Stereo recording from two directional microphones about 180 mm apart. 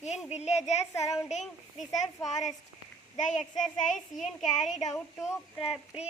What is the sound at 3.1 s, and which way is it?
Speech, 40° left (ahead or behind).